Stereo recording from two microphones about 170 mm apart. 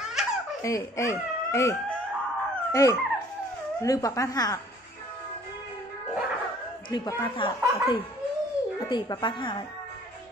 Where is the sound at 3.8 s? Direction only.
20° left (ahead or behind).